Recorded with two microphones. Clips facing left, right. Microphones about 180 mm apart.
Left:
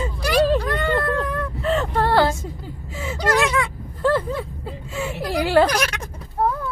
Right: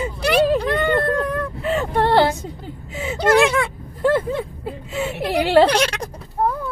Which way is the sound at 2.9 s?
20° right (ahead or behind).